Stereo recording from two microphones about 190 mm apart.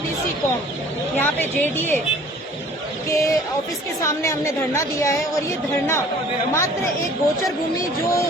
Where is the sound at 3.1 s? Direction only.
15° left (ahead or behind).